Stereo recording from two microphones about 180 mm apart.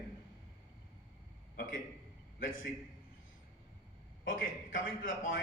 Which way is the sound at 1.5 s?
50° left (ahead or behind).